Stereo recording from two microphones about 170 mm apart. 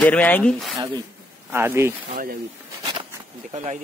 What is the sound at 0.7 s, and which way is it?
Speech, 20° right (ahead or behind).